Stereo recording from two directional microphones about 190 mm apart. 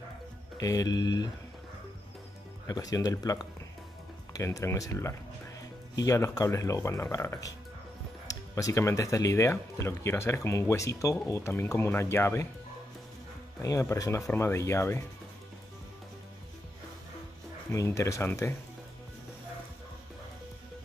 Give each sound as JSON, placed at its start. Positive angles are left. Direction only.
{"t": 0.6, "sound": "speech", "side_deg": 20}
{"t": 2.6, "sound": "speech", "side_deg": 20}
{"t": 13.6, "sound": "speech", "side_deg": 15}
{"t": 17.6, "sound": "speech", "side_deg": 15}